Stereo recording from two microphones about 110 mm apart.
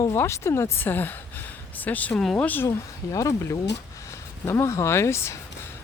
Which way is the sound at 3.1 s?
30° left (ahead or behind).